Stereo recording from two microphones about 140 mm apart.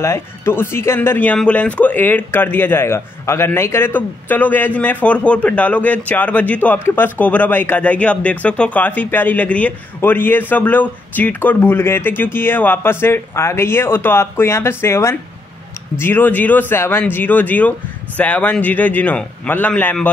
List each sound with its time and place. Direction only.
0.0 s speech: 20° left (ahead or behind)